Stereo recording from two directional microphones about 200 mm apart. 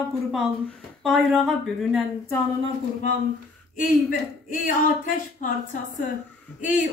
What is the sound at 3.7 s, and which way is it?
Speech, 40° left (ahead or behind).